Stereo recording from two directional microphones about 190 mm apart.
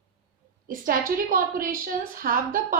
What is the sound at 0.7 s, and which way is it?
A woman's voice, 50° right (ahead or behind).